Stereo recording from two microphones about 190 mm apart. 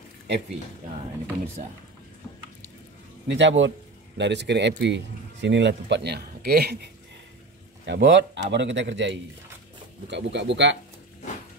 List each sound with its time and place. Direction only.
3.3 s a man's voice: 70° right (ahead or behind)